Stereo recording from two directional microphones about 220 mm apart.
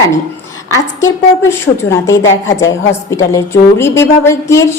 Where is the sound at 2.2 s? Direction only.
60° left (ahead or behind).